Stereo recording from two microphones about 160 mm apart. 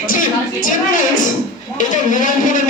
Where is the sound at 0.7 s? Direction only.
55° left (ahead or behind).